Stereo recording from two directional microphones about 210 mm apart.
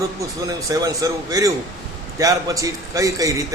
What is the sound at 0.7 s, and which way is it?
A man's voice, 15° right (ahead or behind).